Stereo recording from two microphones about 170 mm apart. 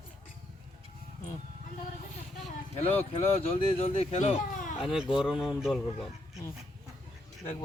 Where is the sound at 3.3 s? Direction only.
35° left (ahead or behind).